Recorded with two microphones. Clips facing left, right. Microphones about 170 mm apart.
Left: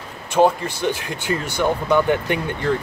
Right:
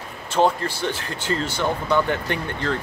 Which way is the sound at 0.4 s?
15° left (ahead or behind).